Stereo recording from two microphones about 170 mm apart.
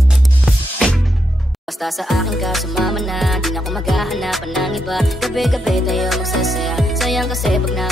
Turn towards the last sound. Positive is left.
turn(degrees=0)  # may be behind; listen again after turning